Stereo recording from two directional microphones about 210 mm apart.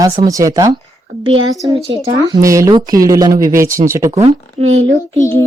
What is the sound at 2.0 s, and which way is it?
A woman's voice, 15° right (ahead or behind).